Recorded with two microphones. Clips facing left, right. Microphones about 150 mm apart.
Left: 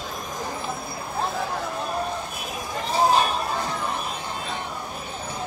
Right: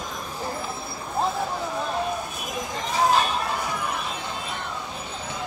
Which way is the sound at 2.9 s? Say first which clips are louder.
Left 1 dB; 35° left (ahead or behind).